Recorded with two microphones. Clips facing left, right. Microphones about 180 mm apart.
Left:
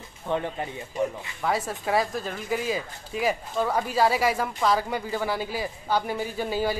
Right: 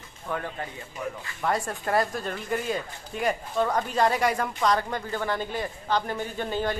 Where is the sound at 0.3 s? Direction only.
20° left (ahead or behind).